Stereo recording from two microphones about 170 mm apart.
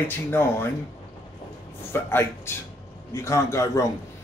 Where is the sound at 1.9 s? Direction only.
15° left (ahead or behind).